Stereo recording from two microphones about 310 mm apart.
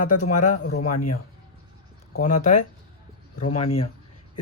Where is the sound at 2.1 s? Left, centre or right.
Left.